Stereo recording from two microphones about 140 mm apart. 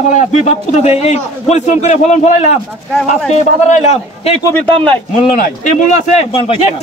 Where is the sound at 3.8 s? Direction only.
50° left (ahead or behind).